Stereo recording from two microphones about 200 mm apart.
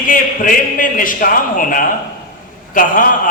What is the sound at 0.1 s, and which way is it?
A man's voice, 40° left (ahead or behind).